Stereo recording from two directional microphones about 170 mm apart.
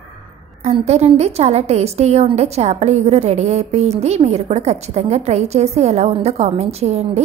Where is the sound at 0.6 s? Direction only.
40° right (ahead or behind).